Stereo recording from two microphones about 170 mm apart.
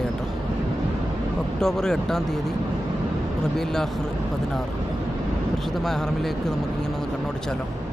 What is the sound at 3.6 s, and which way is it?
Speech, centre (ahead or behind).